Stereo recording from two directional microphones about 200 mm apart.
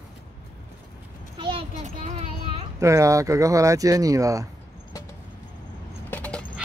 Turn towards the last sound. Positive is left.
turn(degrees=5)  # may be behind; listen again after turning